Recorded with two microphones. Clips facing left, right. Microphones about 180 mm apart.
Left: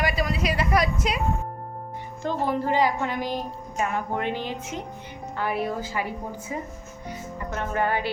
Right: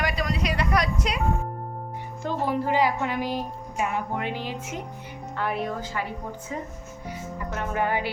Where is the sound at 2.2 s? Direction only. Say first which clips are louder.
Left 1 dB; 10° right (ahead or behind).